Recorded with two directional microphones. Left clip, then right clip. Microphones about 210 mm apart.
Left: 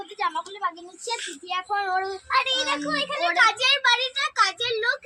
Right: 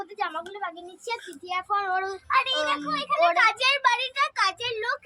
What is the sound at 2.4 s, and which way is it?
A child's voice, 55° right (ahead or behind).